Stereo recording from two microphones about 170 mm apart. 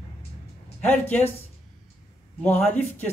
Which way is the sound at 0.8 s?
10° left (ahead or behind).